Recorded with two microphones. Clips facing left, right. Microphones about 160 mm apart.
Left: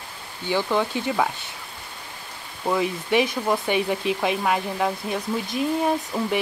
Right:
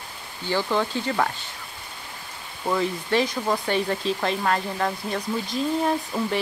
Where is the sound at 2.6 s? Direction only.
10° left (ahead or behind).